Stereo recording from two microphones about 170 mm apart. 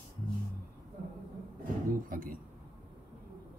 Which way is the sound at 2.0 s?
55° right (ahead or behind).